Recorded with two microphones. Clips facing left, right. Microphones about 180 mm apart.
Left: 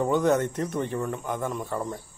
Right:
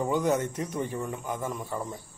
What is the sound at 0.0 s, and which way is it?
Speech, 10° right (ahead or behind).